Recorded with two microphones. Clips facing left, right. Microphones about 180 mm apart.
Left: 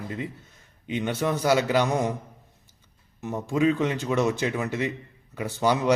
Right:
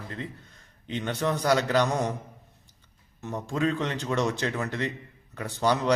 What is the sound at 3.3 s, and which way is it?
A man's voice, 5° left (ahead or behind).